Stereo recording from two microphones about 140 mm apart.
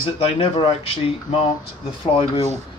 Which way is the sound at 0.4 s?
40° left (ahead or behind).